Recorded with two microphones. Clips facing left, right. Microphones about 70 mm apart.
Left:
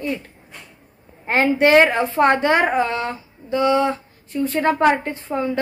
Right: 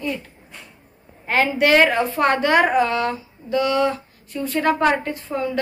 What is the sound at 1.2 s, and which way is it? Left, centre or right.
A woman's voice, left.